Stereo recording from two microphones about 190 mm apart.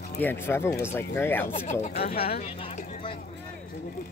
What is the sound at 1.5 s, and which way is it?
Speech, 40° left (ahead or behind).